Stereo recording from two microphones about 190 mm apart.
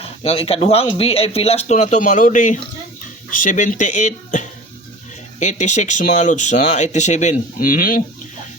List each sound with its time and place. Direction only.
0.0 s speech: 30° left (ahead or behind); by 8.0 s 50° left (ahead or behind)